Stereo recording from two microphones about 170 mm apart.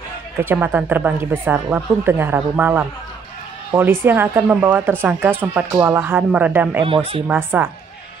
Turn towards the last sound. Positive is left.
turn(degrees=-10)  # may be behind; listen again after turning